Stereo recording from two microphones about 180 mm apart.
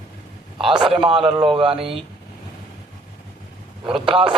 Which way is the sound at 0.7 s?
25° right (ahead or behind).